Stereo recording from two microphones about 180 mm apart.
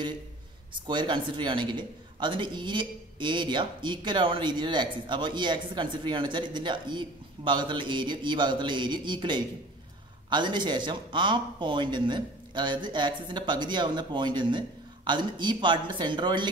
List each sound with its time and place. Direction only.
0.8 s a man's voice: 25° right (ahead or behind)